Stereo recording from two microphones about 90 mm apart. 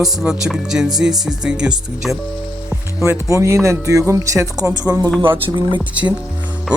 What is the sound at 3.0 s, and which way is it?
Speech, 35° right (ahead or behind).